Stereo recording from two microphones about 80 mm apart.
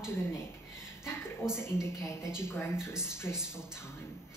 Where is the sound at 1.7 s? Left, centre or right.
Left.